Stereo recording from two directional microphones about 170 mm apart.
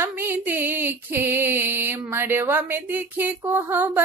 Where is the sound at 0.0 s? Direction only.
10° right (ahead or behind).